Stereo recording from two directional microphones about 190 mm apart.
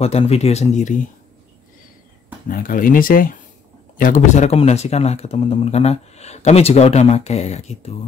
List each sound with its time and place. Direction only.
0.0 s speech: 35° left (ahead or behind)
2.4 s speech: 45° left (ahead or behind)